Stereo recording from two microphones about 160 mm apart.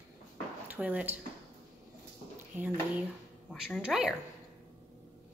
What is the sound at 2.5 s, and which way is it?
A woman's voice, 10° right (ahead or behind).